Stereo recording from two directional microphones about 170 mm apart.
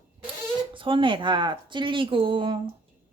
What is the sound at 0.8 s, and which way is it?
Speech, 30° right (ahead or behind).